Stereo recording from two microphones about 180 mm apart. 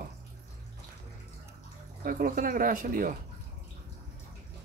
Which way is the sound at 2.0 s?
50° right (ahead or behind).